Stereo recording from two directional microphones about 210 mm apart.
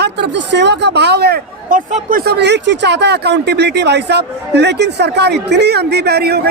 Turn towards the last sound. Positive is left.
turn(degrees=-50)  # may be behind; listen again after turning